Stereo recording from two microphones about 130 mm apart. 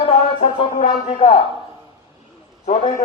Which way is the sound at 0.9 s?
45° left (ahead or behind).